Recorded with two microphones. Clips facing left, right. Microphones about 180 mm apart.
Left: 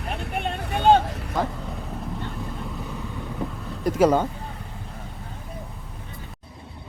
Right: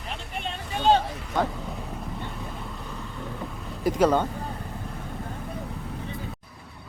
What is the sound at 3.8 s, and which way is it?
Speech, 5° left (ahead or behind).